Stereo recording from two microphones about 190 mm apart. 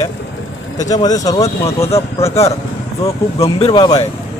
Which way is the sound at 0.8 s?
20° left (ahead or behind).